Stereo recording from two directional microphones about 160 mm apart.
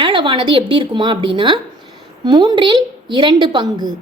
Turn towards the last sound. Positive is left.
turn(degrees=-30)  # may be behind; listen again after turning